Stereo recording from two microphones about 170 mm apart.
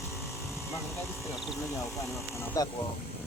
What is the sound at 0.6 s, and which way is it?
Vehicle, 15° left (ahead or behind).